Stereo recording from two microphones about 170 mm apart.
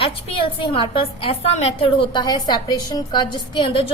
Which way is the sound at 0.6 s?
30° left (ahead or behind).